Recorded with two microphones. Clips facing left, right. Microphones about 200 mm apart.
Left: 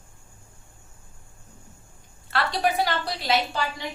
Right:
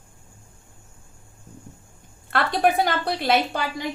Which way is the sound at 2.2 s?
55° right (ahead or behind).